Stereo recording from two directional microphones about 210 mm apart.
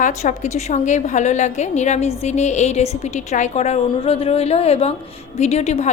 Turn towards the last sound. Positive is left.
turn(degrees=30)  # may be behind; listen again after turning